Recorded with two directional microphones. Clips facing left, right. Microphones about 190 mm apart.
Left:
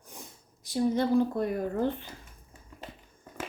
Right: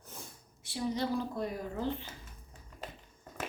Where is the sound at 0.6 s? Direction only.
40° left (ahead or behind).